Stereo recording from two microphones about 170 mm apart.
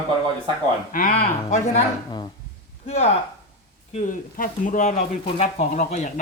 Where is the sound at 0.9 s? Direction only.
50° left (ahead or behind).